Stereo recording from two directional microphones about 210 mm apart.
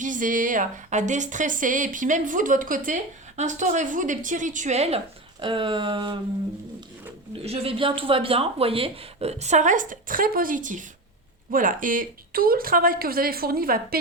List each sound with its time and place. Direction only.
0.0 s a woman's voice: 40° right (ahead or behind); by 6.1 s 20° right (ahead or behind)
7.4 s a woman's voice: 30° right (ahead or behind); by 14.0 s 45° right (ahead or behind)